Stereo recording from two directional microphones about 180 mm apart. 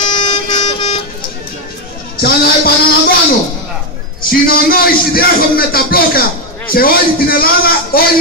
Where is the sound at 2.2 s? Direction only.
55° left (ahead or behind).